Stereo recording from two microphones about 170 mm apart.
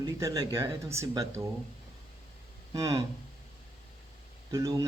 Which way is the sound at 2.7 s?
20° right (ahead or behind).